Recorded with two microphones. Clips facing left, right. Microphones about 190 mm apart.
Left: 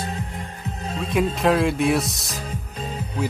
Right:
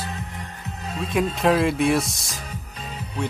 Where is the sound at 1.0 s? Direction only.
Centre (ahead or behind).